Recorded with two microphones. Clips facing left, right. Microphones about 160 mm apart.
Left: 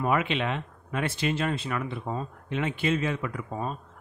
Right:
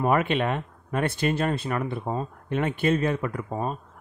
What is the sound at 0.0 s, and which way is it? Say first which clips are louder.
Speech: right 3 dB; 45° right (ahead or behind).